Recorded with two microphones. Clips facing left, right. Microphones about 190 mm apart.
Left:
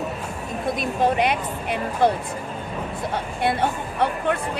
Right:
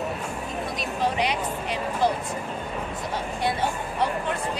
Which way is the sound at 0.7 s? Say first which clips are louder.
Left 5 dB; 55° left (ahead or behind).